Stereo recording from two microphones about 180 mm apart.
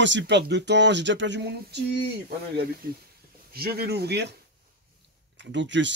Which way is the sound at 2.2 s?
60° right (ahead or behind).